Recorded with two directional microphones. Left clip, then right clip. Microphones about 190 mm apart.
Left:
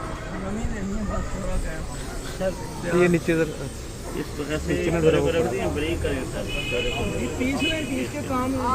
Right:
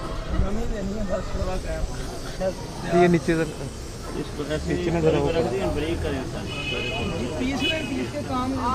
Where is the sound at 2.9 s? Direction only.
20° right (ahead or behind).